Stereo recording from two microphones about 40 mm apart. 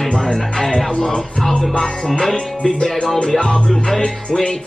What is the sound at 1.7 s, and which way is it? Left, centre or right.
Music, left.